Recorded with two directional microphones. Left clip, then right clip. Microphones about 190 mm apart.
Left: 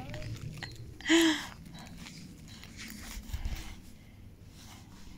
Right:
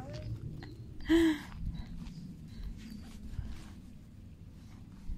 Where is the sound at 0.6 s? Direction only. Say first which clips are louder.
Left 9 dB; 15° right (ahead or behind).